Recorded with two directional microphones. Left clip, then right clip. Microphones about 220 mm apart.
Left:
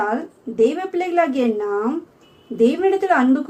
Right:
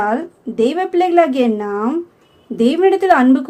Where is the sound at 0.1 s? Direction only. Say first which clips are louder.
Right 4 dB; 50° right (ahead or behind).